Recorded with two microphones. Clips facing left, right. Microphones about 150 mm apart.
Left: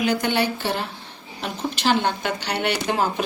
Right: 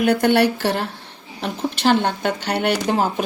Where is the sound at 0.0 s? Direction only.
60° right (ahead or behind).